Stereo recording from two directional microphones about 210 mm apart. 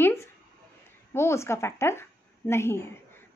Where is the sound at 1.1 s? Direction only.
15° left (ahead or behind).